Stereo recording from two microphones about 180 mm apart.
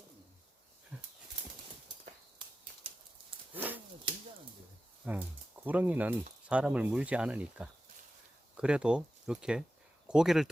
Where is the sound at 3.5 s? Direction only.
10° right (ahead or behind).